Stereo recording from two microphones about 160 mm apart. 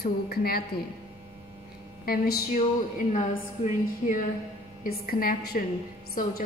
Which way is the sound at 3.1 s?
50° left (ahead or behind).